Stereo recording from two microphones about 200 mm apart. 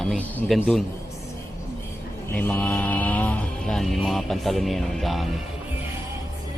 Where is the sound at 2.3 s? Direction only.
10° left (ahead or behind).